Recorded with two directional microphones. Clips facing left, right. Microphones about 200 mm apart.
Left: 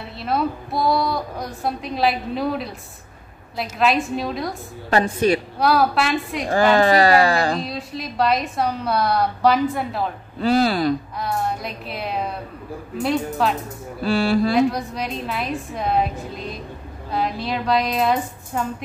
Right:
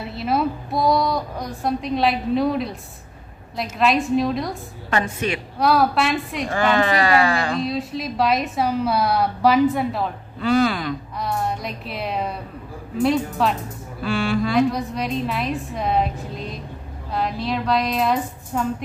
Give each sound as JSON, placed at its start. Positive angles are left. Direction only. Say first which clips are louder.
{"t": 0.1, "sound": "a woman's voice", "louder": "right 1 dB", "side_deg": 0}
{"t": 3.7, "sound": "a woman's voice", "louder": "right 2 dB", "side_deg": 0}
{"t": 4.8, "sound": "speech", "louder": "left 5 dB", "side_deg": 35}
{"t": 5.6, "sound": "a woman's voice", "louder": "right 4 dB", "side_deg": 0}
{"t": 6.5, "sound": "speech", "louder": "left 4 dB", "side_deg": 35}
{"t": 7.6, "sound": "a woman's voice", "louder": "right 4 dB", "side_deg": 0}
{"t": 10.4, "sound": "speech", "louder": "left 1 dB", "side_deg": 35}
{"t": 11.1, "sound": "a woman's voice", "louder": "even", "side_deg": 0}
{"t": 14.0, "sound": "speech", "louder": "left 3 dB", "side_deg": 35}
{"t": 14.7, "sound": "a woman's voice", "louder": "right 2 dB", "side_deg": 0}